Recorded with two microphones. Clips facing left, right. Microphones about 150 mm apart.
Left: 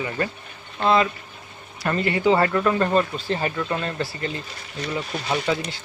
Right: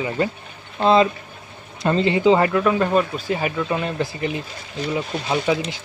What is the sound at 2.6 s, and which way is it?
Speech, 5° right (ahead or behind).